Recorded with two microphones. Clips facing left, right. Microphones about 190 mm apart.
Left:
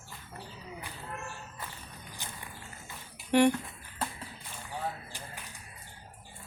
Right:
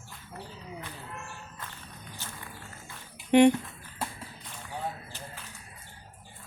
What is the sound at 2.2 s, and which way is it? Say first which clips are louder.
Music: even; 15° left (ahead or behind).